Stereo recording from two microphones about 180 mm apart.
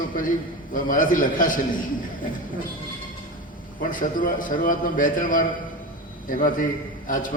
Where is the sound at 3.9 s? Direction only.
50° left (ahead or behind).